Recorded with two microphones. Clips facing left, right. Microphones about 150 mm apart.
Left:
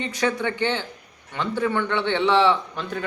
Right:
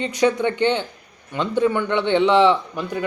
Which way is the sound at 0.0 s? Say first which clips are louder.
Right 5 dB; 15° right (ahead or behind).